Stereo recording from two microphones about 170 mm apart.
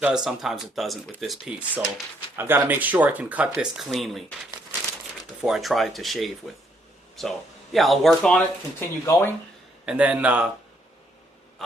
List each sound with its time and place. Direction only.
0.0 s speech: 5° right (ahead or behind)
5.4 s speech: centre (ahead or behind)
8.8 s speech: 20° left (ahead or behind)
9.8 s speech: 5° right (ahead or behind)